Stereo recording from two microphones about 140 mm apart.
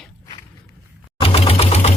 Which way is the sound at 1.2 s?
45° left (ahead or behind).